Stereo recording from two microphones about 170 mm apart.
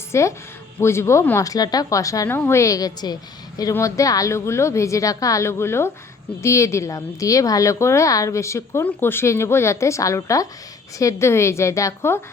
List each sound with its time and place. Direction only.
0.1 s a woman's voice: 15° left (ahead or behind)